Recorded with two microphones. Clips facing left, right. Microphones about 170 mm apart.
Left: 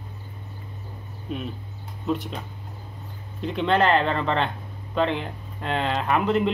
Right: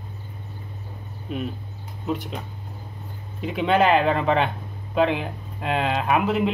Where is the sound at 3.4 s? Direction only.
5° right (ahead or behind).